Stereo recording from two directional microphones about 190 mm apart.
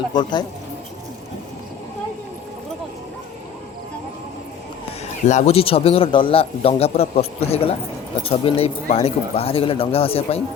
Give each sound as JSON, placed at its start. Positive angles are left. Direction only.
{"t": 0.1, "sound": "speech", "side_deg": 25}
{"t": 5.2, "sound": "speech", "side_deg": 35}